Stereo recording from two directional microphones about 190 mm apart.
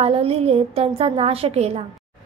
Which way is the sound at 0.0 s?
30° right (ahead or behind).